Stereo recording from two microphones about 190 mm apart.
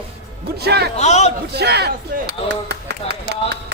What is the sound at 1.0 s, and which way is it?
Speech, 35° left (ahead or behind).